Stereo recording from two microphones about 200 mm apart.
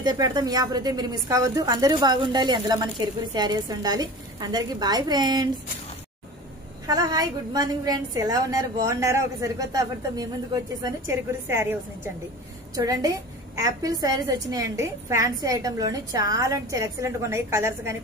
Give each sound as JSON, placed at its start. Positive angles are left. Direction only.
{"t": 0.0, "sound": "a woman's voice", "side_deg": -20}
{"t": 6.9, "sound": "a woman's voice", "side_deg": -20}